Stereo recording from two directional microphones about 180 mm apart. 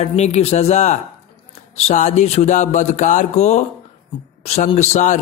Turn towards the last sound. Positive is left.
turn(degrees=40)  # may be behind; listen again after turning